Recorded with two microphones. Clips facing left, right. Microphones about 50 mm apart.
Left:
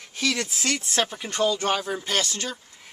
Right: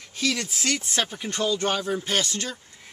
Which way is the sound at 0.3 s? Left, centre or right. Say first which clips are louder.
Left 1 dB; centre.